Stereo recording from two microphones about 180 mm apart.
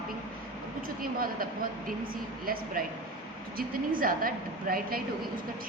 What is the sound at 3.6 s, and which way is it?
A woman's voice, 50° right (ahead or behind).